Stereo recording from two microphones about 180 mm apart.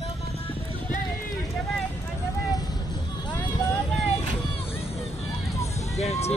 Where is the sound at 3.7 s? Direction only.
5° left (ahead or behind).